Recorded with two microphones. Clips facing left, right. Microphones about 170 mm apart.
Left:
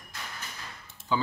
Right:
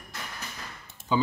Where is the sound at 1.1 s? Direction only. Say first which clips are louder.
Right 3 dB; 15° right (ahead or behind).